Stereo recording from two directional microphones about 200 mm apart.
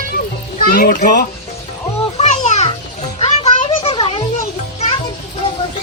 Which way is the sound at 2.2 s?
35° left (ahead or behind).